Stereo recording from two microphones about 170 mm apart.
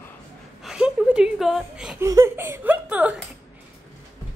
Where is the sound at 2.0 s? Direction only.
15° right (ahead or behind).